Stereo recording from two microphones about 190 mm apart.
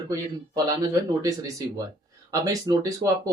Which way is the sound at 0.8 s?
20° right (ahead or behind).